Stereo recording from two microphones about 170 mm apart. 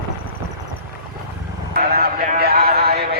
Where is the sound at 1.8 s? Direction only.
60° right (ahead or behind).